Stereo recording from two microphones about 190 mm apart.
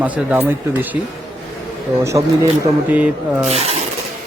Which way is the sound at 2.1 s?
15° right (ahead or behind).